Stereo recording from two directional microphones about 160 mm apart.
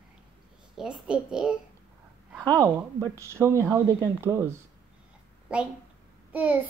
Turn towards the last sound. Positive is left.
turn(degrees=-10)  # may be behind; listen again after turning